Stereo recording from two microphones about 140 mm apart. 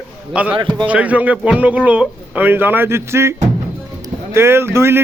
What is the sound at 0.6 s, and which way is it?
Speech, 35° right (ahead or behind).